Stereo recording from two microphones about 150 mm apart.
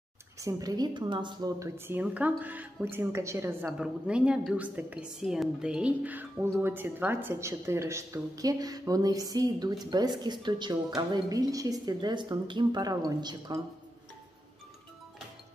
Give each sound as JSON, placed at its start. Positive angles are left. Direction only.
{"t": 0.4, "sound": "a woman's voice", "side_deg": -25}
{"t": 1.6, "sound": "a woman's voice", "side_deg": -15}